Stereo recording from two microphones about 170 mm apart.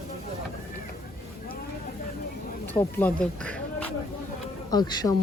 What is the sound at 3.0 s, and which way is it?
Speech, 5° left (ahead or behind).